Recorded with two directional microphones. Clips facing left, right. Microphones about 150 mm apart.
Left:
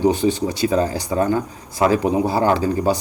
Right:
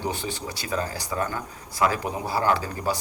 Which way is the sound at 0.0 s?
20° left (ahead or behind).